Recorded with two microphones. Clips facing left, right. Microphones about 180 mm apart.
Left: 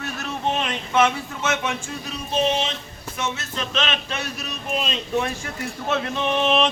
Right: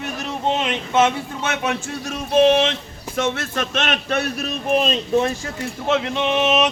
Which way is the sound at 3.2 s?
50° right (ahead or behind).